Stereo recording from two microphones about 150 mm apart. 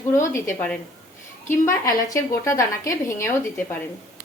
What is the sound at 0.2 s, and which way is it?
A woman's voice, 20° left (ahead or behind).